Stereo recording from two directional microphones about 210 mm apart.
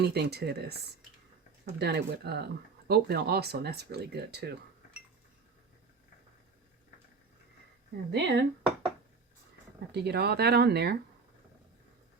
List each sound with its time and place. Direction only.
0.0 s speech: 50° right (ahead or behind)
8.1 s speech: 50° right (ahead or behind)
9.9 s speech: 50° right (ahead or behind)